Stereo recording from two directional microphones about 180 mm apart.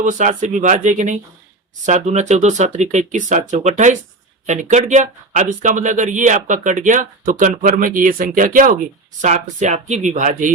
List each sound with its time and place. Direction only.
0.0 s speech: 45° right (ahead or behind)